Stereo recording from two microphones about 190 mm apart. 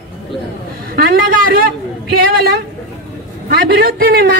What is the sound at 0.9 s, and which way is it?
A man's voice, 55° right (ahead or behind).